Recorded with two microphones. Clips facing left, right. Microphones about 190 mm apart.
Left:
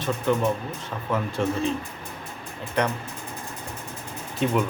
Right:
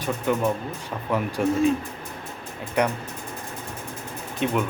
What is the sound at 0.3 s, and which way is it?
Speech, 10° right (ahead or behind).